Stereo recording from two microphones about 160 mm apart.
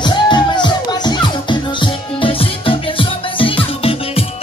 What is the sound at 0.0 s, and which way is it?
Music, 30° left (ahead or behind).